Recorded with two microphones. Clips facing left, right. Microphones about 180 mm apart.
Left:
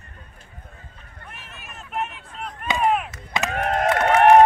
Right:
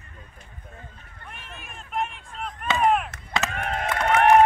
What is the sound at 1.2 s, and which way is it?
Vehicle, 5° left (ahead or behind).